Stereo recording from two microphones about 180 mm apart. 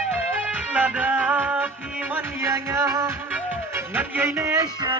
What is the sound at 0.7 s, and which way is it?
Music, 10° right (ahead or behind).